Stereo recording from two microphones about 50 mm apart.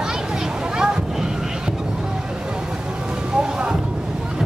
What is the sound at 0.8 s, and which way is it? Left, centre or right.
Boat, centre.